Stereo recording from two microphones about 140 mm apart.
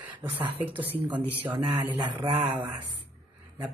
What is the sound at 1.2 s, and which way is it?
Speech, 10° right (ahead or behind).